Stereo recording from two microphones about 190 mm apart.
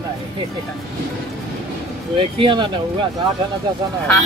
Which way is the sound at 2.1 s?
25° right (ahead or behind).